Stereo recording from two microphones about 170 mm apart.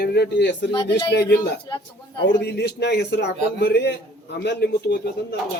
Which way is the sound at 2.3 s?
80° left.